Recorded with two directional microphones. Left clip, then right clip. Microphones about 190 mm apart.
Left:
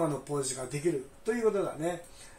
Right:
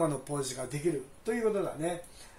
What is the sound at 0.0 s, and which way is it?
Speech, 15° right (ahead or behind).